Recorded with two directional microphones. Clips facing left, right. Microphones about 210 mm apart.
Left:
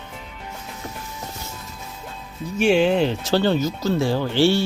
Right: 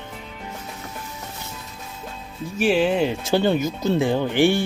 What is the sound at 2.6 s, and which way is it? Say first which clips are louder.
Speech: left 2 dB; 5° right (ahead or behind).